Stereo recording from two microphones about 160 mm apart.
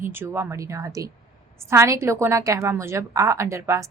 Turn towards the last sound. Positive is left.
turn(degrees=-20)  # may be behind; listen again after turning